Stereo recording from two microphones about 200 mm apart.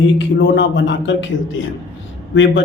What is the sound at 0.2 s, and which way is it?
Speech, 65° left (ahead or behind).